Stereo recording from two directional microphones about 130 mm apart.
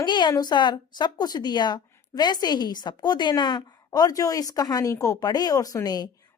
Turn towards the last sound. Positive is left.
turn(degrees=30)  # may be behind; listen again after turning